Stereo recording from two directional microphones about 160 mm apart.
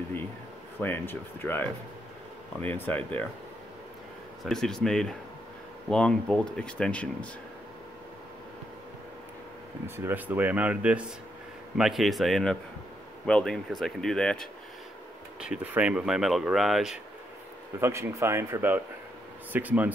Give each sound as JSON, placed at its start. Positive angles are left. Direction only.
{"t": 0.7, "sound": "speech", "side_deg": 15}
{"t": 4.5, "sound": "speech", "side_deg": 5}
{"t": 9.8, "sound": "speech", "side_deg": -15}
{"t": 15.4, "sound": "speech", "side_deg": -10}
{"t": 17.7, "sound": "speech", "side_deg": -15}